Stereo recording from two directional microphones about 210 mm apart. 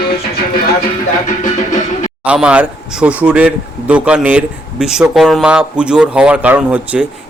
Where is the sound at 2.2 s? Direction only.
5° right (ahead or behind).